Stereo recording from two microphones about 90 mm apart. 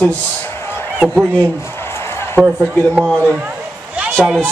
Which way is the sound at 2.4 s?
10° right (ahead or behind).